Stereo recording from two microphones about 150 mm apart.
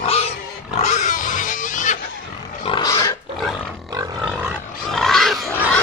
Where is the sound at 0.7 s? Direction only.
50° left (ahead or behind).